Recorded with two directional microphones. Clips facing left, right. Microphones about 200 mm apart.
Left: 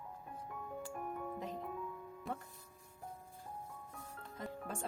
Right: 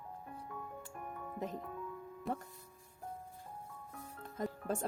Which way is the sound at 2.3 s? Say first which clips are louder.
Right 4 dB; centre (ahead or behind).